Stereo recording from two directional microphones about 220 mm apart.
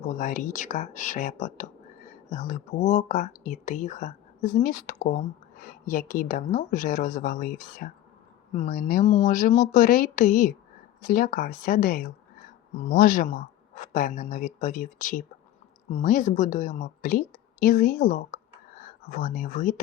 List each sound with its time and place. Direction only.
0.1 s speech: 35° left (ahead or behind)